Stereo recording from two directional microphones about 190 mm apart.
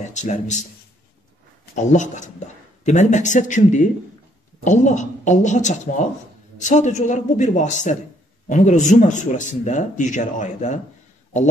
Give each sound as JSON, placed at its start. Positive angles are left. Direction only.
{"t": 0.1, "sound": "a man's voice", "side_deg": 40}
{"t": 1.8, "sound": "a man's voice", "side_deg": 40}